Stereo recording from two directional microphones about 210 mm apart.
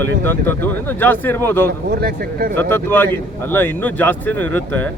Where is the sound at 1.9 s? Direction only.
45° right (ahead or behind).